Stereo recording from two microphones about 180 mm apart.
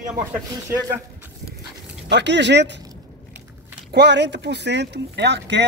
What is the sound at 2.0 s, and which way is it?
Speech, 75° right (ahead or behind).